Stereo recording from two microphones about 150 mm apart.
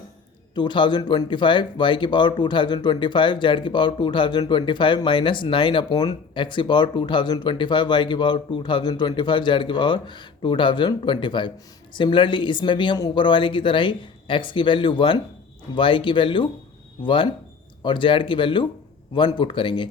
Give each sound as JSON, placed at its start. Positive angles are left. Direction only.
{"t": 0.5, "sound": "speech", "side_deg": 30}